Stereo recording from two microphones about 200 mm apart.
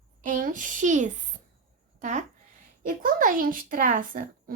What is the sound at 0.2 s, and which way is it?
A woman's voice, 40° right (ahead or behind).